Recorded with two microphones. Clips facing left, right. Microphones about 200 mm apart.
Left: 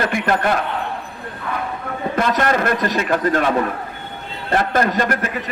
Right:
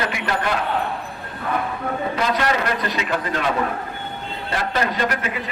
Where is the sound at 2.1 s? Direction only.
50° left (ahead or behind).